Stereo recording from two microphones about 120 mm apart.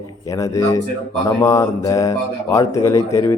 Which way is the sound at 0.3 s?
25° left (ahead or behind).